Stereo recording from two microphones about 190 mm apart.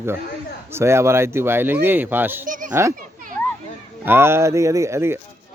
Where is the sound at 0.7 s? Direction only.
15° right (ahead or behind).